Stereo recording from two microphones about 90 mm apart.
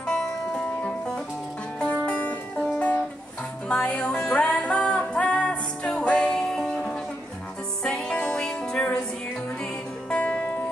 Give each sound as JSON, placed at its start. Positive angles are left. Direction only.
{"t": 0.0, "sound": "music", "side_deg": 5}
{"t": 10.0, "sound": "music", "side_deg": 15}